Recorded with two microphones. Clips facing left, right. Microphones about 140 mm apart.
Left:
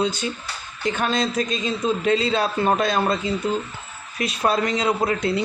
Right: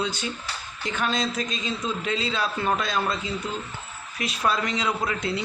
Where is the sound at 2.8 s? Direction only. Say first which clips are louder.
Left 6 dB; 50° left (ahead or behind).